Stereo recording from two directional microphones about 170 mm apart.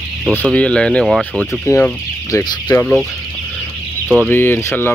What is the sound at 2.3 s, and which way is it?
Speech, 20° left (ahead or behind).